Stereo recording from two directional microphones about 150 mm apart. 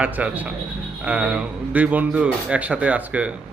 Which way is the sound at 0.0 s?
10° right (ahead or behind).